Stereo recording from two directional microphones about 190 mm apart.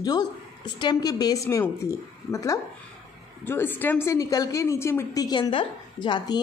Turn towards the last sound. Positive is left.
turn(degrees=20)  # may be behind; listen again after turning